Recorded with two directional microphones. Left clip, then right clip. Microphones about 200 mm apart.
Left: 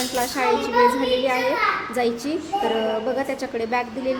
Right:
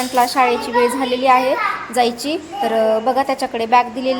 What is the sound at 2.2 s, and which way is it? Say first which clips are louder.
A woman's voice: right 3 dB; 10° right (ahead or behind).